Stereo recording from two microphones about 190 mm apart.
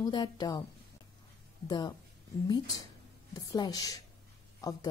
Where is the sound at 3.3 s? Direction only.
20° left (ahead or behind).